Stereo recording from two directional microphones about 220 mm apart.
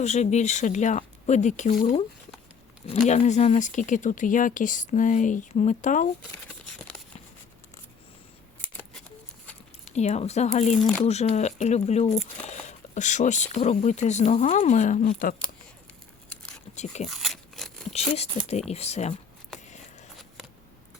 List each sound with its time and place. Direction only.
0.0 s speech: 30° left (ahead or behind)
8.8 s a sound: 5° left (ahead or behind)
9.9 s speech: 30° left (ahead or behind)
10.8 s speech: centre (ahead or behind)
11.0 s speech: 30° left (ahead or behind)
16.7 s speech: 30° left (ahead or behind)
17.1 s a sound: centre (ahead or behind)
18.7 s speech: 30° left (ahead or behind)
19.5 s a sound: 30° left (ahead or behind)